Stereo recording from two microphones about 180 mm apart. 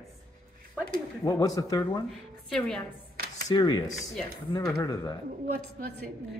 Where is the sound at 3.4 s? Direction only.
25° left (ahead or behind).